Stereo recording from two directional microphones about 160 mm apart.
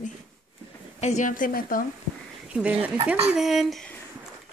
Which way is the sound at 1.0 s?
50° left (ahead or behind).